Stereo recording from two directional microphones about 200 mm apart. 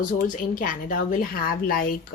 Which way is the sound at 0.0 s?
40° left (ahead or behind).